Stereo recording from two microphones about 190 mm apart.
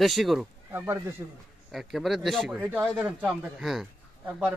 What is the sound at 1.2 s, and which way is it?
Speech, 10° right (ahead or behind).